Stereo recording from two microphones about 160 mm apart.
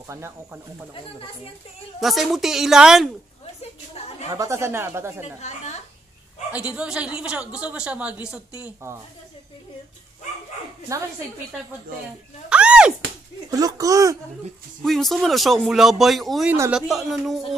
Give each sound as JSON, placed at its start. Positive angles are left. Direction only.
{"t": 0.1, "sound": "a woman's voice", "side_deg": -15}
{"t": 2.0, "sound": "speech", "side_deg": 0}
{"t": 3.6, "sound": "a sound", "side_deg": 40}
{"t": 4.3, "sound": "a woman's voice", "side_deg": -20}
{"t": 5.4, "sound": "a woman's voice", "side_deg": 45}
{"t": 6.5, "sound": "a woman's voice", "side_deg": -5}
{"t": 12.4, "sound": "speech", "side_deg": -5}
{"t": 13.5, "sound": "speech", "side_deg": -25}
{"t": 14.8, "sound": "speech", "side_deg": 0}